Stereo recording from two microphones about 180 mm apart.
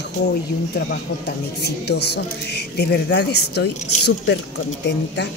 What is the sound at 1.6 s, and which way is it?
Speech, 65° left (ahead or behind).